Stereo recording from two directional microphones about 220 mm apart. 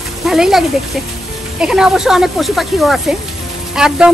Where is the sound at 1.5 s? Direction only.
5° right (ahead or behind).